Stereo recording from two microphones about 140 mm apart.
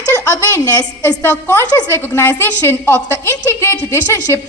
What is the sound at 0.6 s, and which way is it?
A woman's voice, 20° left (ahead or behind).